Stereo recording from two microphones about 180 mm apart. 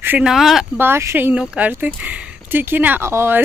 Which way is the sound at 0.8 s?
15° right (ahead or behind).